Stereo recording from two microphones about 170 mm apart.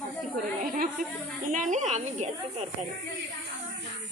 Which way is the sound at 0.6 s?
55° right (ahead or behind).